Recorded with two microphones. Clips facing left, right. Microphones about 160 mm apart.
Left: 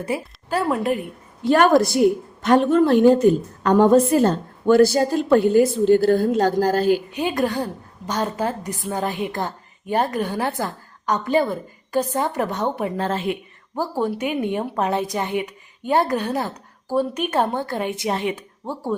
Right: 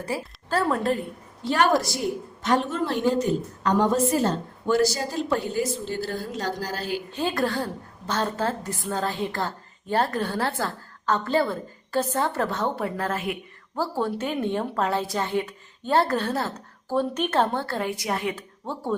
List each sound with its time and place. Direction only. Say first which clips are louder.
0.0 s a woman's voice: left 4 dB; 15° left (ahead or behind)
1.5 s a woman's voice: left 6 dB; 50° left (ahead or behind)
7.1 s a woman's voice: left 3 dB; 15° left (ahead or behind)
13.7 s a woman's voice: left 3 dB; 15° left (ahead or behind)
18.6 s a woman's voice: left 2 dB; 10° left (ahead or behind)